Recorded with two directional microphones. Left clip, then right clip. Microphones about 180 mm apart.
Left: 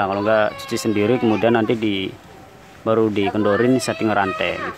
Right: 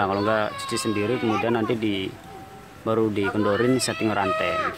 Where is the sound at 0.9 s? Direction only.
20° left (ahead or behind).